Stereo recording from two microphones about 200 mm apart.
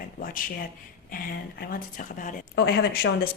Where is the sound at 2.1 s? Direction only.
45° left (ahead or behind).